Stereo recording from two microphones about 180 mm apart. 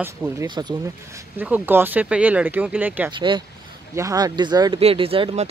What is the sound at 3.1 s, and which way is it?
Speech, 25° right (ahead or behind).